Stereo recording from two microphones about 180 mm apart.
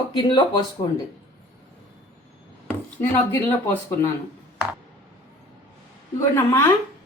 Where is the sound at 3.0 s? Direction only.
15° left (ahead or behind).